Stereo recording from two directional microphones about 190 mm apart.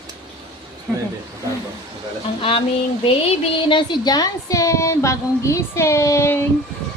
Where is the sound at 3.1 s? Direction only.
30° left (ahead or behind); by 6.5 s 15° left (ahead or behind).